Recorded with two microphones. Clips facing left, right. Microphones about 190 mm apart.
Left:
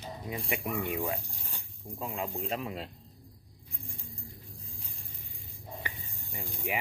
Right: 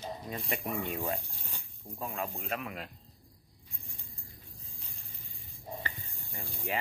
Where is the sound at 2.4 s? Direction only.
30° left (ahead or behind).